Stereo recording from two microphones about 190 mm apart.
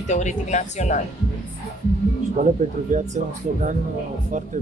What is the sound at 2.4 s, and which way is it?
Speech, 45° right (ahead or behind).